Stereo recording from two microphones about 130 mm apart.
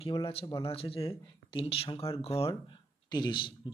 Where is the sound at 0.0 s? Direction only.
45° left (ahead or behind).